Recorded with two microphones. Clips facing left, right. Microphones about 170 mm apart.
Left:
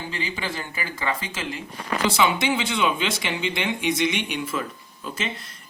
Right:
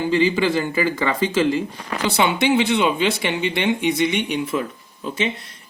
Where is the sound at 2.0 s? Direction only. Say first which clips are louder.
Right 4 dB; 65° right (ahead or behind).